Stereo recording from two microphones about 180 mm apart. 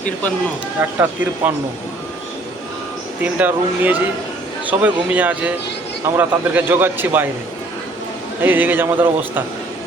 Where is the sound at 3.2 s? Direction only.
10° right (ahead or behind).